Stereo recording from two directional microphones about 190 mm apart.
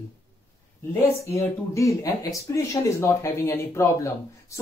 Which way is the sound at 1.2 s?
15° left (ahead or behind).